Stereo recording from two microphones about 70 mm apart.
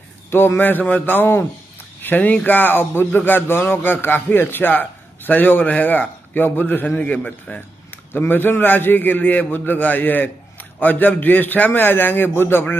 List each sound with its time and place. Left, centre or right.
0.3 s speech: left